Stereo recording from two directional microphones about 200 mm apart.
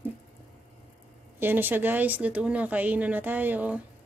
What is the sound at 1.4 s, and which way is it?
Speech, 10° right (ahead or behind).